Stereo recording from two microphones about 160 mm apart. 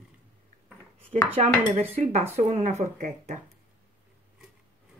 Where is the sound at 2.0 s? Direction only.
45° right (ahead or behind).